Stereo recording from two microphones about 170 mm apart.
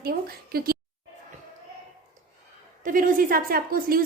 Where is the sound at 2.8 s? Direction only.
55° right (ahead or behind).